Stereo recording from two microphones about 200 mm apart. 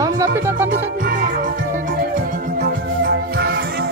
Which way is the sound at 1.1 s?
45° right (ahead or behind).